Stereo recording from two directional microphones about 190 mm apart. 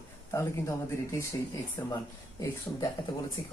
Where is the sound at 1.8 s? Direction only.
15° left (ahead or behind).